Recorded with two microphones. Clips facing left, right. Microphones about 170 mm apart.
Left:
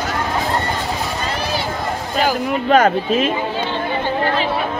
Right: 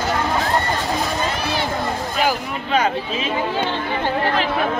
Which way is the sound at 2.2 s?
50° left (ahead or behind).